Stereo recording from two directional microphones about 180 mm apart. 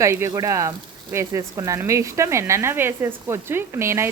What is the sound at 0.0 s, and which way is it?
Speech, 15° right (ahead or behind).